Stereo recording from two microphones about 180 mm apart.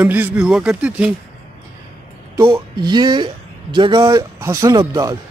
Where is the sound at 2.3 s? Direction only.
15° right (ahead or behind).